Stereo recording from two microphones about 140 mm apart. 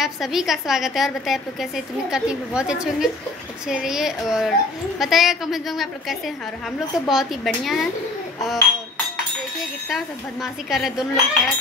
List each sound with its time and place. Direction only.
0.0 s a woman's voice: centre (ahead or behind)
9.8 s a woman's voice: 5° right (ahead or behind)